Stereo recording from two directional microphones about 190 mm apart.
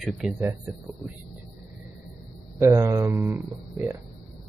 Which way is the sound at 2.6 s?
15° right (ahead or behind).